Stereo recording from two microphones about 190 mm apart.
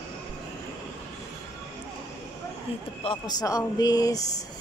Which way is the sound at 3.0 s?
25° left (ahead or behind).